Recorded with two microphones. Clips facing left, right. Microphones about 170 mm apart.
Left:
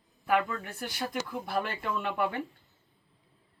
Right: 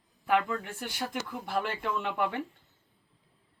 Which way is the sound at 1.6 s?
10° right (ahead or behind).